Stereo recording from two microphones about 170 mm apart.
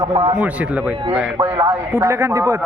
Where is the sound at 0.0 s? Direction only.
25° right (ahead or behind).